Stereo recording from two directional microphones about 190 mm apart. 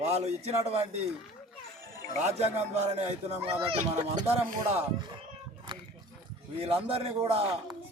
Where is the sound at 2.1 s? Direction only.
35° right (ahead or behind).